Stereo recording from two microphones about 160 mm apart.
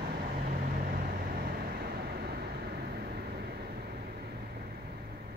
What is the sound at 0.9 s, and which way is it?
Vehicle, 75° right (ahead or behind).